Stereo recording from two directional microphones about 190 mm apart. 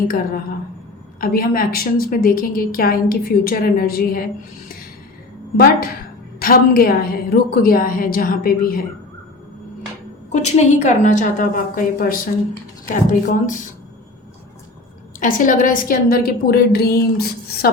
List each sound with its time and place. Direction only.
1.2 s a woman's voice: 50° left (ahead or behind)
6.4 s a woman's voice: 50° left (ahead or behind)
10.3 s a woman's voice: 40° left (ahead or behind)
15.2 s a woman's voice: 45° left (ahead or behind)